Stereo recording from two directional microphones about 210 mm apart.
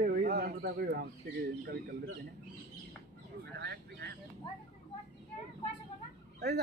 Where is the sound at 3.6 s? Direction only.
50° right (ahead or behind).